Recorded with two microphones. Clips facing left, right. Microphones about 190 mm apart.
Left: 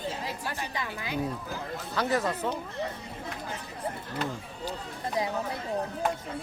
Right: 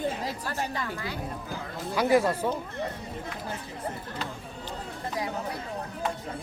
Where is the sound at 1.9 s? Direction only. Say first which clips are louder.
Right 5 dB; 10° right (ahead or behind).